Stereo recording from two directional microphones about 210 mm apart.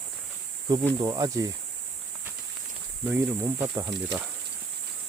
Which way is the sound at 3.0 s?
10° right (ahead or behind).